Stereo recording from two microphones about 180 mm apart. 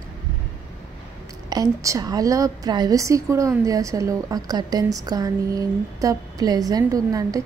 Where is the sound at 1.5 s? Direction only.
20° right (ahead or behind).